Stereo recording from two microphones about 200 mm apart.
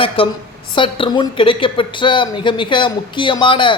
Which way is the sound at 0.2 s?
25° left (ahead or behind).